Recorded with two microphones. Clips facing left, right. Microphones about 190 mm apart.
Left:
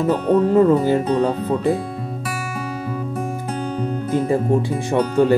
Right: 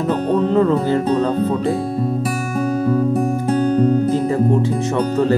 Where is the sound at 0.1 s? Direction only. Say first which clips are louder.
Even; 10° left (ahead or behind).